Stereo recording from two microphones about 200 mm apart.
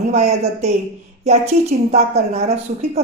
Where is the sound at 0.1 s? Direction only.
35° right (ahead or behind).